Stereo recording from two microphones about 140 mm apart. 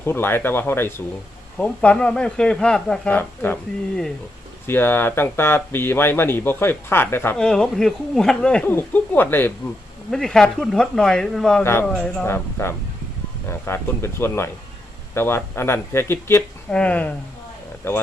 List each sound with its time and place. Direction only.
0.0 s speech: 15° left (ahead or behind)
7.3 s speech: 5° left (ahead or behind)
10.1 s speech: 5° left (ahead or behind)
11.6 s speech: 15° left (ahead or behind)
11.9 s speech: 5° left (ahead or behind)
12.2 s speech: 15° left (ahead or behind)